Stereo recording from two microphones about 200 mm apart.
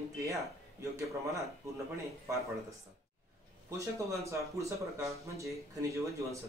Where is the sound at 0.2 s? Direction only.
15° right (ahead or behind).